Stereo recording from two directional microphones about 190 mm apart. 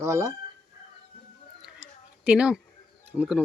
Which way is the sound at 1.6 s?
5° right (ahead or behind).